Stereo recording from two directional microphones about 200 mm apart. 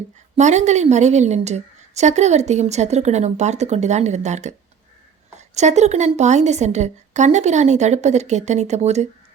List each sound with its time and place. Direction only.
0.3 s a woman's voice: 35° right (ahead or behind)